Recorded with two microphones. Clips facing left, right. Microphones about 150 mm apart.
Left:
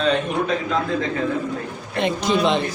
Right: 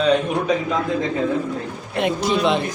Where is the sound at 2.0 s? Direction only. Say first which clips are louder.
Even; 5° right (ahead or behind).